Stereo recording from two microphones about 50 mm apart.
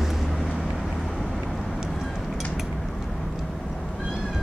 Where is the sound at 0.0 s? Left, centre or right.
Centre.